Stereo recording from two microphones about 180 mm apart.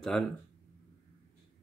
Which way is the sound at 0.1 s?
5° left (ahead or behind).